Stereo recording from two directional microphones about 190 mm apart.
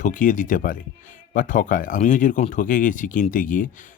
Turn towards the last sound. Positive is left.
turn(degrees=45)  # may be behind; listen again after turning